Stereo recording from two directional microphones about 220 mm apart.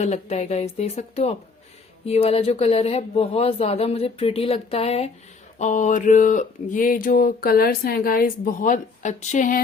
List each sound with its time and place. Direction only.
0.0 s speech: 30° left (ahead or behind)